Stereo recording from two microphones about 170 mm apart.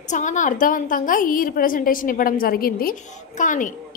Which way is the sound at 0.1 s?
45° left (ahead or behind).